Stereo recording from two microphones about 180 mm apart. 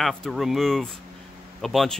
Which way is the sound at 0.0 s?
Centre (ahead or behind).